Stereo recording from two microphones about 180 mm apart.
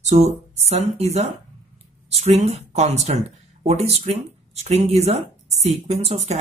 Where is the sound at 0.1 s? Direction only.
40° right (ahead or behind).